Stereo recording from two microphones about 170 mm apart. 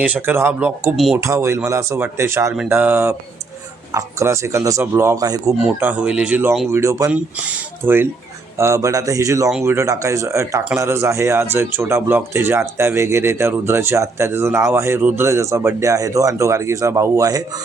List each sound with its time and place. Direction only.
0.0 s speech: 10° right (ahead or behind)
0.9 s speech: centre (ahead or behind)
1.2 s speech: 15° right (ahead or behind)
5.6 s speech: 10° right (ahead or behind)